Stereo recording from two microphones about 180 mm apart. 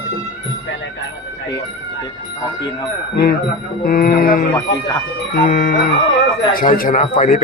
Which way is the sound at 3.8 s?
55° left (ahead or behind).